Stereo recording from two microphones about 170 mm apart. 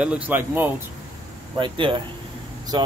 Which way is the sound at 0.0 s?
10° right (ahead or behind).